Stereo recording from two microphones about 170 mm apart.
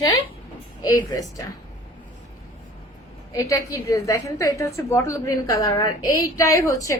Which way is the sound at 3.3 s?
20° left (ahead or behind).